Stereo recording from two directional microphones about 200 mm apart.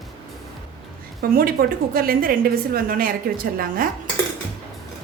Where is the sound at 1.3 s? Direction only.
50° right (ahead or behind).